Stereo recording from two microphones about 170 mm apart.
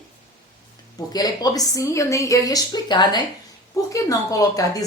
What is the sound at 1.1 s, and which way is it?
Speech, 20° left (ahead or behind).